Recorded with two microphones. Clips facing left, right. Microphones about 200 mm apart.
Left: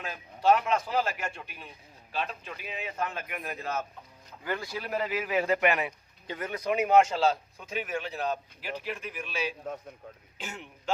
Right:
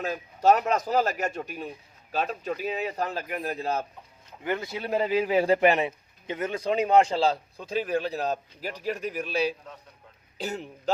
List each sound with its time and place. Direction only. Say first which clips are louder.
0.0 s speech: right 4 dB; 40° right (ahead or behind)
4.4 s a man's voice: right 4 dB; 20° right (ahead or behind)